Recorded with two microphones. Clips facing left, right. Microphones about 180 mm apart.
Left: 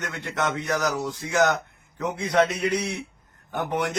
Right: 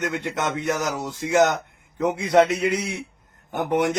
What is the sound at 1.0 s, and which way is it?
A man's voice, 20° right (ahead or behind).